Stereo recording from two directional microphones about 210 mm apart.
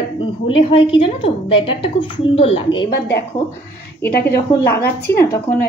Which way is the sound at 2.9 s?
50° left (ahead or behind).